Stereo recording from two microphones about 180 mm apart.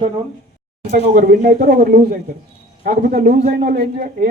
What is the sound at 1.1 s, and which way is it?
A man's voice, 50° right (ahead or behind).